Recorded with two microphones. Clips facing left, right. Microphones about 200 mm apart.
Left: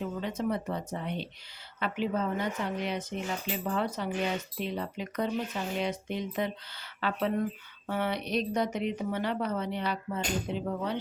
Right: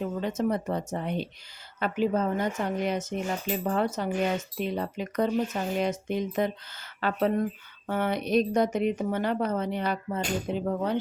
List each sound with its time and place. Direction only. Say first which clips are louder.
0.0 s a woman's voice: right 4 dB; 45° right (ahead or behind)